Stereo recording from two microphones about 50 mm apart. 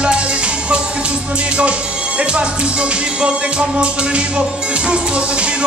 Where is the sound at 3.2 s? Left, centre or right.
Right.